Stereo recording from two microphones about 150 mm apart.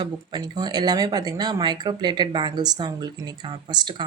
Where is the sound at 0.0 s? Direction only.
30° right (ahead or behind).